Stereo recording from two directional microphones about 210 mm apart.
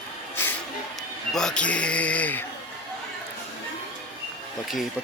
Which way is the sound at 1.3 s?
5° left (ahead or behind).